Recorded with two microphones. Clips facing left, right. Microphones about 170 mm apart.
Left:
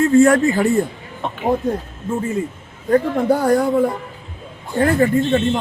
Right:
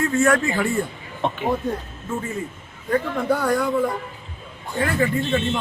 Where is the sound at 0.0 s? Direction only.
30° left (ahead or behind).